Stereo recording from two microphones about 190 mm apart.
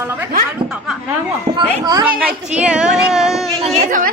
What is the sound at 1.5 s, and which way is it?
Speech, 20° right (ahead or behind).